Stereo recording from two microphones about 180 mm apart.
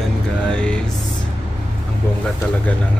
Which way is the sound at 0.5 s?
5° left (ahead or behind).